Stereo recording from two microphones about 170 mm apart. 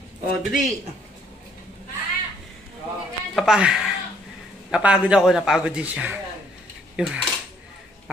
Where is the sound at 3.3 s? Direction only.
Centre (ahead or behind).